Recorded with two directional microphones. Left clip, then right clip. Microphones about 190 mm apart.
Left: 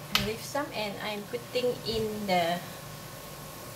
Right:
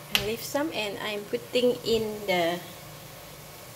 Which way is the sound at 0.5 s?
45° right (ahead or behind).